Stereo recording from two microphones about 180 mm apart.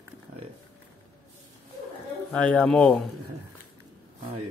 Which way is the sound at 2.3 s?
5° left (ahead or behind).